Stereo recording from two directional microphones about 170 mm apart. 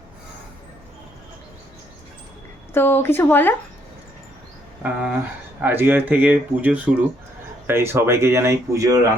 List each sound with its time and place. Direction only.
2.7 s speech: 15° left (ahead or behind)
4.8 s speech: 5° right (ahead or behind)